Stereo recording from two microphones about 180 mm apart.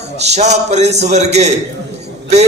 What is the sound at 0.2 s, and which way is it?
A man's voice, 40° right (ahead or behind).